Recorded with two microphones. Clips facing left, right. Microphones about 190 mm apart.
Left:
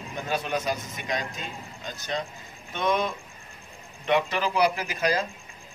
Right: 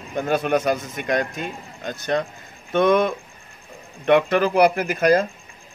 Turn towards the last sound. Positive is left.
turn(degrees=-55)  # may be behind; listen again after turning